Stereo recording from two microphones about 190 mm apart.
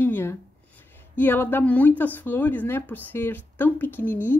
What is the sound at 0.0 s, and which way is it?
Speech, 10° left (ahead or behind).